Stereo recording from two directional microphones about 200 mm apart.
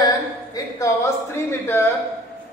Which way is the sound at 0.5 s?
15° left (ahead or behind).